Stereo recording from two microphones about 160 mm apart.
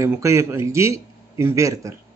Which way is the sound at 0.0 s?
20° right (ahead or behind).